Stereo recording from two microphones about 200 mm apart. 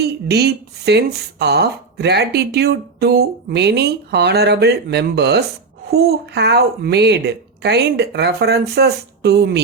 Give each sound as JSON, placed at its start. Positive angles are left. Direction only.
{"t": 0.0, "sound": "speech", "side_deg": -55}